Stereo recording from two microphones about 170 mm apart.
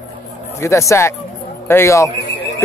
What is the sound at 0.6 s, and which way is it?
Speech, 15° left (ahead or behind).